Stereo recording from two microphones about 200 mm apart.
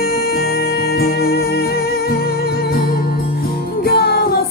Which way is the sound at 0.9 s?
50° left (ahead or behind).